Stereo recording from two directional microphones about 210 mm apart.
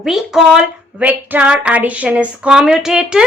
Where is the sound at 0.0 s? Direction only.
Centre (ahead or behind).